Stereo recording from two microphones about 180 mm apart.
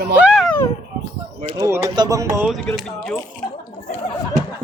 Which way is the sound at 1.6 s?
15° right (ahead or behind).